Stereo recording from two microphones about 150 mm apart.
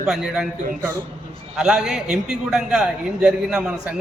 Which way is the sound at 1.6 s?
5° right (ahead or behind).